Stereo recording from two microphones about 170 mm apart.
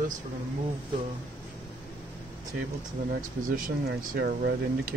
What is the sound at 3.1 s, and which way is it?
Speech, 55° right (ahead or behind).